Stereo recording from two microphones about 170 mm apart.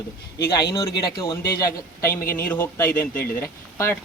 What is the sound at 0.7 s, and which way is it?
Speech, 25° left (ahead or behind).